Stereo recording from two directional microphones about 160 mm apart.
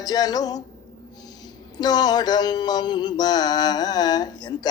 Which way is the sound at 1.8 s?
25° left (ahead or behind).